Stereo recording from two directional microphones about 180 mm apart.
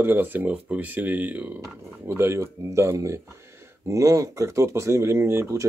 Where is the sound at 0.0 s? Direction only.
10° right (ahead or behind).